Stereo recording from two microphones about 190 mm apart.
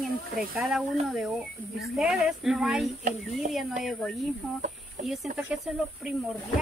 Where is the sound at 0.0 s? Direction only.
Centre (ahead or behind).